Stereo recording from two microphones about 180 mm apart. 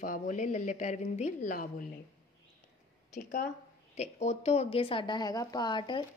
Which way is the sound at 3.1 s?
45° left (ahead or behind).